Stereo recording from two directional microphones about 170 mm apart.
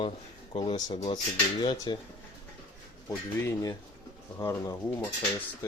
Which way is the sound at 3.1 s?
20° left (ahead or behind).